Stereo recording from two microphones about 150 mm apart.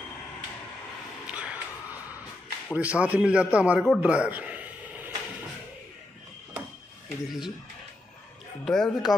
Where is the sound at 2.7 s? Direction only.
10° right (ahead or behind).